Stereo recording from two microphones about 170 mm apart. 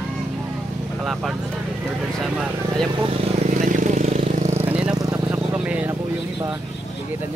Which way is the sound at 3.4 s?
50° right (ahead or behind).